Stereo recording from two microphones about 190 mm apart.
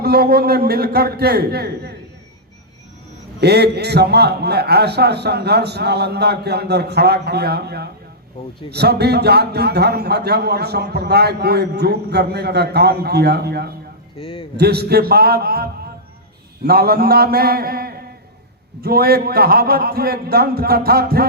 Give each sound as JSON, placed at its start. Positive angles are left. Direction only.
{"t": 0.0, "sound": "speech", "side_deg": -55}
{"t": 3.4, "sound": "speech", "side_deg": -60}
{"t": 14.2, "sound": "a man's voice", "side_deg": 30}
{"t": 14.5, "sound": "a man's voice", "side_deg": -60}